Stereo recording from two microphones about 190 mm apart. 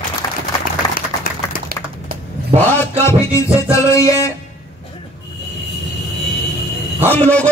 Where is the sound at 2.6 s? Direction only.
15° left (ahead or behind).